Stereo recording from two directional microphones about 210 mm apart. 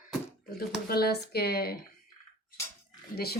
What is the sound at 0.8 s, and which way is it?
Speech, 45° left (ahead or behind).